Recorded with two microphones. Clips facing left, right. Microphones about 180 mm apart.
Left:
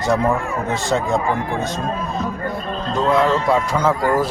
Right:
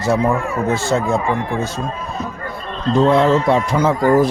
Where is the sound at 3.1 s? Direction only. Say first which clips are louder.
Even; 30° right (ahead or behind).